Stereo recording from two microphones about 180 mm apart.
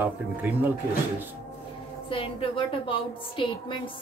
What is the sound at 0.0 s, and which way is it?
Speech, 10° right (ahead or behind).